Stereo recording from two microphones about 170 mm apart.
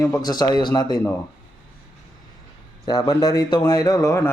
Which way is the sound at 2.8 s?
25° left (ahead or behind).